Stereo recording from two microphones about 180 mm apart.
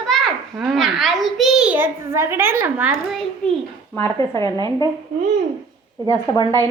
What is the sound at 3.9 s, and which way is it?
Speech, 15° left (ahead or behind).